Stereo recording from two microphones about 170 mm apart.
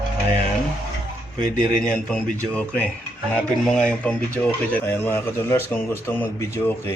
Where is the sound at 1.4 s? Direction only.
50° left (ahead or behind).